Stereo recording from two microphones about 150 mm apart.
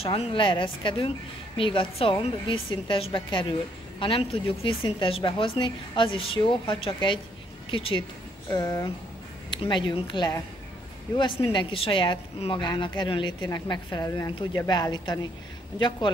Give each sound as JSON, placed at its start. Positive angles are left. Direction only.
{"t": 0.0, "sound": "a woman's voice", "side_deg": 40}
{"t": 8.5, "sound": "a woman's voice", "side_deg": 20}
{"t": 9.5, "sound": "a woman's voice", "side_deg": 30}